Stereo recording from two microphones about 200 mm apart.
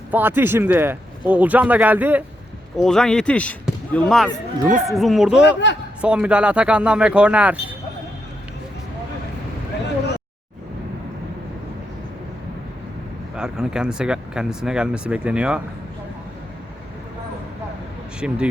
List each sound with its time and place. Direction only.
0.1 s speech: 10° right (ahead or behind)
2.7 s speech: centre (ahead or behind)
5.4 s a man's voice: 65° left (ahead or behind)
6.0 s speech: 5° right (ahead or behind)
13.3 s speech: 5° right (ahead or behind)
18.2 s speech: 5° right (ahead or behind)